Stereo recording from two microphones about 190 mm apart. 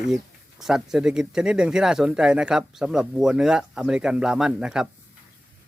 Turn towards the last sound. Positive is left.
turn(degrees=-5)  # may be behind; listen again after turning